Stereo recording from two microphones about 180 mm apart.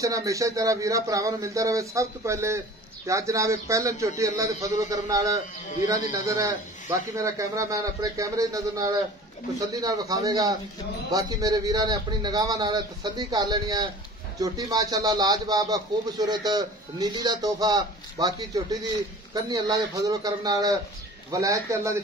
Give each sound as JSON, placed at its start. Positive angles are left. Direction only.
{"t": 0.0, "sound": "speech", "side_deg": -15}